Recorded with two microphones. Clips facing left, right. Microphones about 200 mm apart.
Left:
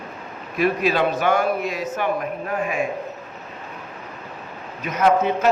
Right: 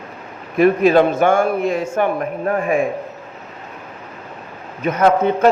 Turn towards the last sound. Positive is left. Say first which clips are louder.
# right 4 dB
turn(degrees=-55)  # may be behind; listen again after turning